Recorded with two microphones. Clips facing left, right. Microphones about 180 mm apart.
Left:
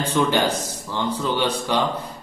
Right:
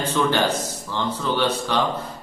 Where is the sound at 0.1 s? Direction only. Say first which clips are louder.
Left 1 dB; 15° left (ahead or behind).